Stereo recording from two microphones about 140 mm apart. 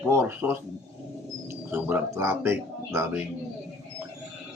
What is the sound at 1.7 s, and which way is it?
Speech, 15° right (ahead or behind).